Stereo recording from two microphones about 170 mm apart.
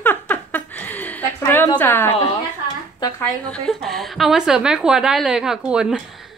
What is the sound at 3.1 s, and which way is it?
A woman's voice, 5° left (ahead or behind).